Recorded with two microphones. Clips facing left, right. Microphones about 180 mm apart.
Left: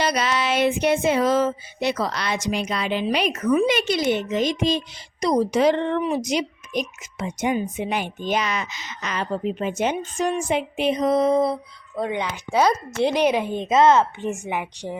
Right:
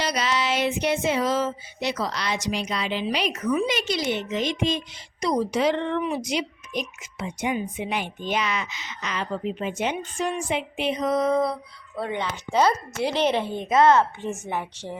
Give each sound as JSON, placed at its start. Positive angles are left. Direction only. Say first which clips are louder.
{"t": 0.0, "sound": "a woman's voice", "louder": "left 3 dB", "side_deg": 55}